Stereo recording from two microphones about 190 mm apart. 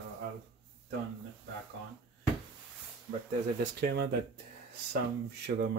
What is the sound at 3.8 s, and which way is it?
Speech, 55° right (ahead or behind).